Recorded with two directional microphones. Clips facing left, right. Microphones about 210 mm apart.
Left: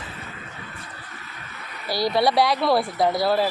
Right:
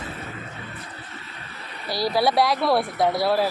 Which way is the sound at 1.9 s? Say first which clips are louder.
Left 1 dB; centre (ahead or behind).